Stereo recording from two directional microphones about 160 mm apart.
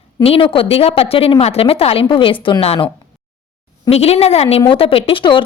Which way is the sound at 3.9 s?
40° left (ahead or behind).